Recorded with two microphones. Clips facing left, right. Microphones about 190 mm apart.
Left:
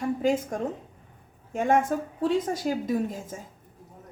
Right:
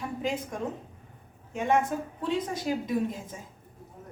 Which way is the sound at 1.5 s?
45° left (ahead or behind).